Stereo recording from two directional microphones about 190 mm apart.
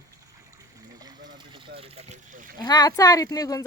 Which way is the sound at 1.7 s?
30° right (ahead or behind).